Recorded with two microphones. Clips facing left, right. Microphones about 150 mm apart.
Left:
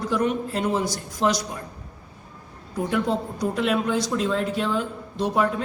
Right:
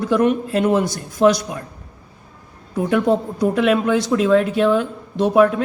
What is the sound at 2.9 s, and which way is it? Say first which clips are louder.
A man's voice: right 8 dB; 60° right (ahead or behind).